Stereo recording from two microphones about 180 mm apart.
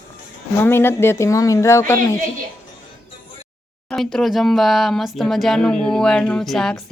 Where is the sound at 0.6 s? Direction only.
15° left (ahead or behind).